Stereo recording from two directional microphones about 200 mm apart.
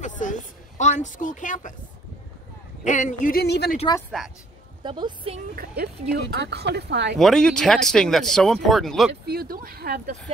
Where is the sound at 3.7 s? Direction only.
20° left (ahead or behind).